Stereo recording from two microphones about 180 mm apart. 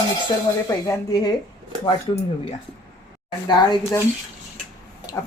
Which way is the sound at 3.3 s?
25° left (ahead or behind).